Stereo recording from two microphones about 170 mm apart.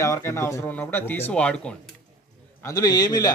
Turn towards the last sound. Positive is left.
turn(degrees=25)  # may be behind; listen again after turning